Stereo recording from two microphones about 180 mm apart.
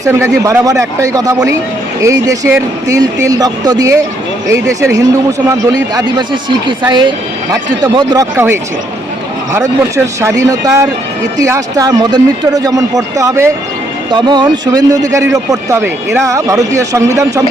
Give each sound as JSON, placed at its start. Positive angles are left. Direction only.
{"t": 0.0, "sound": "speech", "side_deg": -15}